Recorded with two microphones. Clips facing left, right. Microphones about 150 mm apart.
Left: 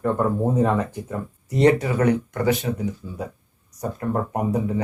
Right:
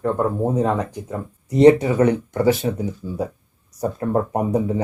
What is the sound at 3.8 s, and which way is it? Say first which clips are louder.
Speech: right 4 dB; 30° right (ahead or behind).